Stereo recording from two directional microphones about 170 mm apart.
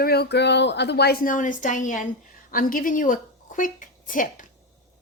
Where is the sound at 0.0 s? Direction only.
70° left (ahead or behind).